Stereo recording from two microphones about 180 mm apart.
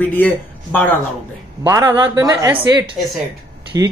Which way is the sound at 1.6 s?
10° right (ahead or behind).